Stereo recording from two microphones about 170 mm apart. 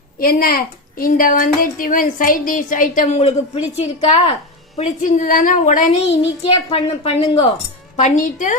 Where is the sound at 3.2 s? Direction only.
40° left (ahead or behind).